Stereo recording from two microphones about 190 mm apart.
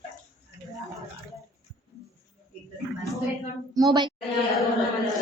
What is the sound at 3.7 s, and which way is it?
Speech, 20° right (ahead or behind).